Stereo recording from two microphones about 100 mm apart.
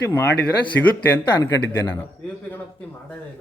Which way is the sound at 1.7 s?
25° left (ahead or behind).